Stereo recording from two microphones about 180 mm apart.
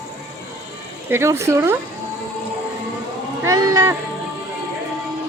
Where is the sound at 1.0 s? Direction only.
15° right (ahead or behind).